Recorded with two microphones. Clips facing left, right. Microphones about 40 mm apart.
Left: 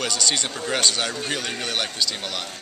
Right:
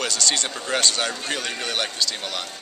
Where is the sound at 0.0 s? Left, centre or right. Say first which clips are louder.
Even; centre.